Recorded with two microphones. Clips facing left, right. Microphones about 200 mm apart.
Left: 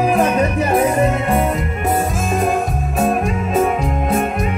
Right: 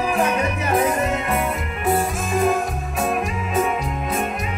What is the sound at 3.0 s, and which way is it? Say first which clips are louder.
Music: left 6 dB; 40° left (ahead or behind).